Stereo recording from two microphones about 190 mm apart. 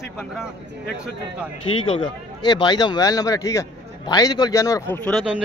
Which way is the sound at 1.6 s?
25° left (ahead or behind).